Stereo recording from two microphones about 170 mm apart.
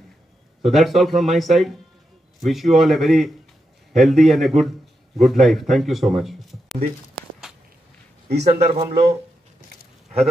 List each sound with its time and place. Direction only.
0.7 s speech: centre (ahead or behind)
8.3 s a man's voice: 75° right (ahead or behind)
8.5 s speech: 40° right (ahead or behind)
10.0 s a sound: centre (ahead or behind)